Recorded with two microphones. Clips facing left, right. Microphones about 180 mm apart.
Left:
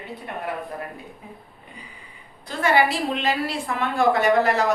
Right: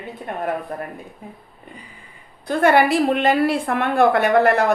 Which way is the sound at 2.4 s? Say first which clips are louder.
Right 5 dB; 55° right (ahead or behind).